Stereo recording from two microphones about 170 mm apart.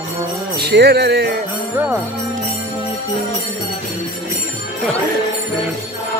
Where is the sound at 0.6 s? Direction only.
75° right (ahead or behind).